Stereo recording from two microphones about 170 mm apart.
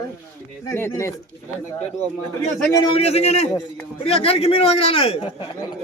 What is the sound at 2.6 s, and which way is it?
Speech, 15° left (ahead or behind).